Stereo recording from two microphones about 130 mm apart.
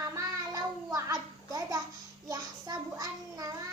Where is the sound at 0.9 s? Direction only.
25° right (ahead or behind).